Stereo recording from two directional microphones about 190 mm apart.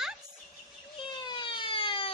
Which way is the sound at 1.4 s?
25° left (ahead or behind).